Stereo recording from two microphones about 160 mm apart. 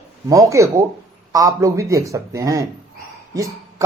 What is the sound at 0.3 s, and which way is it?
Speech, 20° right (ahead or behind).